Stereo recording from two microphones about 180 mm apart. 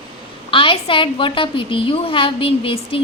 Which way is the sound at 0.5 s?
30° left (ahead or behind).